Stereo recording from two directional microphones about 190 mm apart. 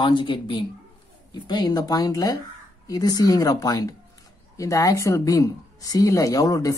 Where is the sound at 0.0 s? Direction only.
25° left (ahead or behind).